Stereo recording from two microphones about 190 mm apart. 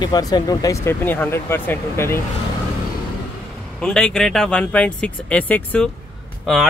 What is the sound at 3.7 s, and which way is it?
Speech, 5° left (ahead or behind).